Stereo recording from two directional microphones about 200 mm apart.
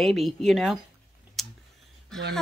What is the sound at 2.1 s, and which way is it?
Speech, centre (ahead or behind).